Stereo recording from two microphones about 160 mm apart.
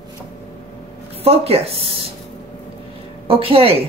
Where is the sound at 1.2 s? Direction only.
40° right (ahead or behind).